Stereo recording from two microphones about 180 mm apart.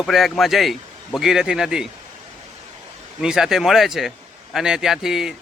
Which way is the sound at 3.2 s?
5° right (ahead or behind).